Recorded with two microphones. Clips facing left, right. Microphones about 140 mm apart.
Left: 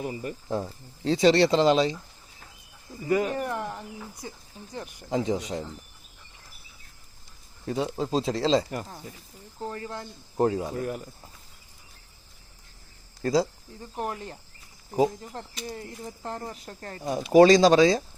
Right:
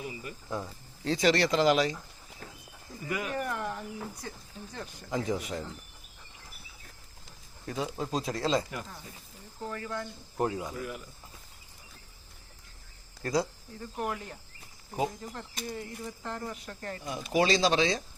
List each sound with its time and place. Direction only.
0.0 s speech: 45° left (ahead or behind)
0.6 s speech: 30° left (ahead or behind)
3.1 s speech: 35° left (ahead or behind)
3.4 s speech: 20° left (ahead or behind)
5.0 s speech: 25° left (ahead or behind)
7.7 s speech: 25° left (ahead or behind)
8.7 s speech: 40° left (ahead or behind)
9.6 s speech: 30° left (ahead or behind)
13.2 s speech: 30° left (ahead or behind)